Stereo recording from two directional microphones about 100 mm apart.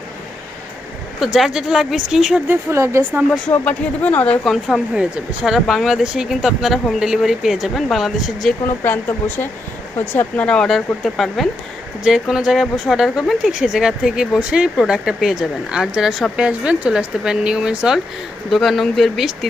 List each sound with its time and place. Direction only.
1.2 s speech: 5° right (ahead or behind)
2.5 s speech: 25° right (ahead or behind)
3.5 s speech: 15° left (ahead or behind)
4.4 s speech: centre (ahead or behind)
8.6 s speech: 20° left (ahead or behind); by 19.5 s centre (ahead or behind)